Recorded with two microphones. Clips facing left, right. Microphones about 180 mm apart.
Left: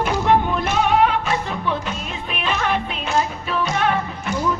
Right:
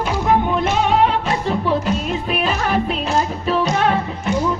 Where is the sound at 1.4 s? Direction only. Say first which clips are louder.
Right 6 dB; 35° right (ahead or behind).